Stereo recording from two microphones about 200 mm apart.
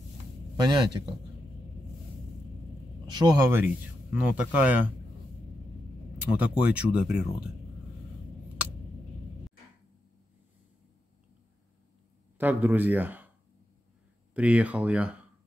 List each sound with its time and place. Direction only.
0.6 s a man's voice: 20° right (ahead or behind)
3.1 s speech: 20° right (ahead or behind)
6.4 s speech: 5° right (ahead or behind)
12.4 s speech: 10° right (ahead or behind)
14.3 s speech: 5° right (ahead or behind)